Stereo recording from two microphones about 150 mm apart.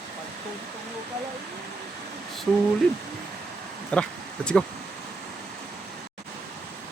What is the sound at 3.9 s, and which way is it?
Speech, 10° left (ahead or behind).